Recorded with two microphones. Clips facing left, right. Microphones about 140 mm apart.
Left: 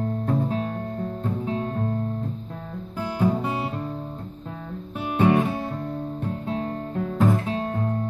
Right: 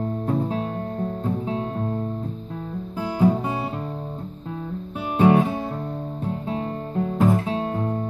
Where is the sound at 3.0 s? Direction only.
20° right (ahead or behind).